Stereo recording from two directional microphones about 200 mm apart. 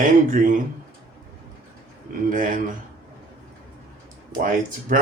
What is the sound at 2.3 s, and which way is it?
Speech, 40° right (ahead or behind).